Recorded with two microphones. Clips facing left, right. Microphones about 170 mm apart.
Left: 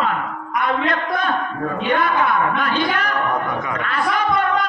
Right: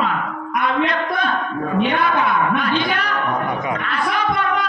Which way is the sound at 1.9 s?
50° left (ahead or behind).